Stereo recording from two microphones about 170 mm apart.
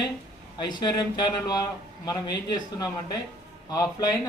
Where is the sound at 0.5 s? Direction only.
25° left (ahead or behind).